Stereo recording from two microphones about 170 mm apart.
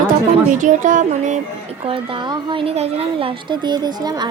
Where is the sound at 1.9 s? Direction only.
30° right (ahead or behind).